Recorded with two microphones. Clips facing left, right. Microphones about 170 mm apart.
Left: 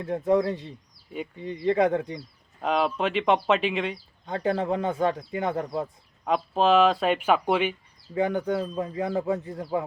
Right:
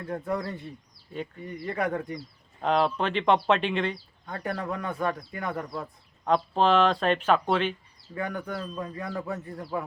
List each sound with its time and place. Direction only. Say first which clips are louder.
0.0 s speech: left 8 dB; 20° left (ahead or behind)
2.6 s speech: even; centre (ahead or behind)
4.3 s speech: left 6 dB; 25° left (ahead or behind)
6.2 s speech: left 1 dB; 5° left (ahead or behind)
8.1 s speech: left 8 dB; 25° left (ahead or behind)